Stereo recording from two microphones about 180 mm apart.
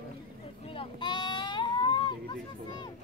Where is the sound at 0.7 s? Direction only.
25° left (ahead or behind).